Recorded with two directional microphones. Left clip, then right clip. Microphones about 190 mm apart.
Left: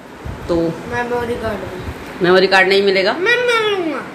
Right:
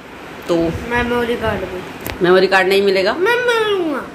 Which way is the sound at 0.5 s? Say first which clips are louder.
Right 1 dB; 5° right (ahead or behind).